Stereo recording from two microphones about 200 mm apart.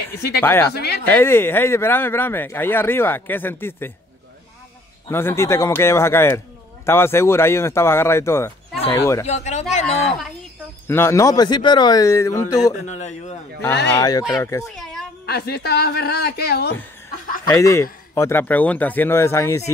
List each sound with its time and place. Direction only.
0.4 s speech: 10° left (ahead or behind)
5.1 s speech: 10° left (ahead or behind)
9.2 s speech: 35° left (ahead or behind)
10.9 s speech: 10° left (ahead or behind)
12.8 s speech: 35° left (ahead or behind)
13.8 s speech: 15° left (ahead or behind)
15.2 s speech: 50° left (ahead or behind)
17.5 s speech: 15° left (ahead or behind)